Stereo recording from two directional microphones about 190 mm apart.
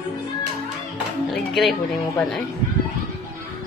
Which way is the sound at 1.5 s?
Centre (ahead or behind).